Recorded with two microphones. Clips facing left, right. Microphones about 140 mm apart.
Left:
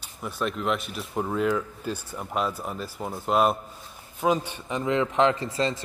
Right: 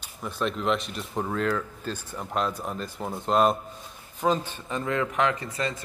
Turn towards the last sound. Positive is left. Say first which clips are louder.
# left 4 dB
turn(degrees=25)  # may be behind; listen again after turning